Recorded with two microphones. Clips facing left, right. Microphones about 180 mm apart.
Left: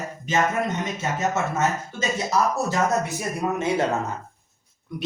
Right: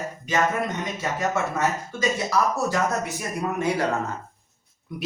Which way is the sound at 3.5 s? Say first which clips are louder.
Left 1 dB; 25° left (ahead or behind).